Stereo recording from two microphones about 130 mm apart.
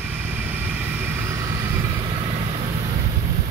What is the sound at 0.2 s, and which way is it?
Vehicle, 15° right (ahead or behind).